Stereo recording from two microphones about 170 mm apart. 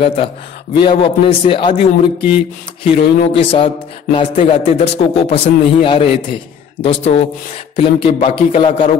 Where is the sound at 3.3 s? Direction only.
30° left (ahead or behind).